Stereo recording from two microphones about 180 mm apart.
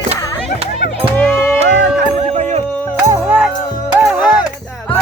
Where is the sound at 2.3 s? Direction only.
40° right (ahead or behind).